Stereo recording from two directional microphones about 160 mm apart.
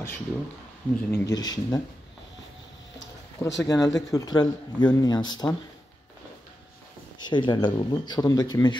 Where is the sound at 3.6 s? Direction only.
25° left (ahead or behind).